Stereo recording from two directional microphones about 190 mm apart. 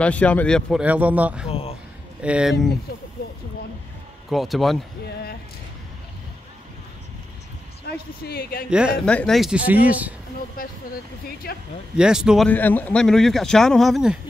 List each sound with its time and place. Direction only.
0.0 s speech: 5° left (ahead or behind)
0.8 s speech: 10° right (ahead or behind)
1.5 s speech: 30° left (ahead or behind)
2.2 s speech: 5° right (ahead or behind)
4.3 s speech: centre (ahead or behind)
7.9 s a sound: 55° left (ahead or behind)
8.2 s speech: 55° left (ahead or behind)
8.6 s speech: 5° right (ahead or behind)
10.6 s speech: 50° left (ahead or behind)
12.0 s speech: 5° right (ahead or behind)
12.4 s speech: 10° left (ahead or behind)